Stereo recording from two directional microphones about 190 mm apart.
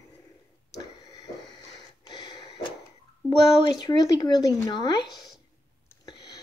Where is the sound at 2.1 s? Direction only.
25° left (ahead or behind).